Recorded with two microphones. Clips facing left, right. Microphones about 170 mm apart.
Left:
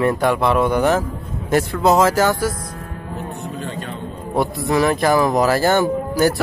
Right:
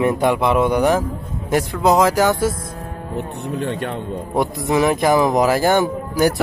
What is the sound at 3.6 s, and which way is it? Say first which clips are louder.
Speech: right 8 dB; 65° right (ahead or behind).